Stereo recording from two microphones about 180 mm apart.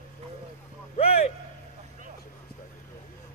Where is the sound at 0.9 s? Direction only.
35° left (ahead or behind).